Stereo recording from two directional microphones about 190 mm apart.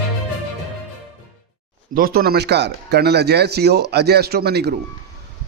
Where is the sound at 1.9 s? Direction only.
50° right (ahead or behind).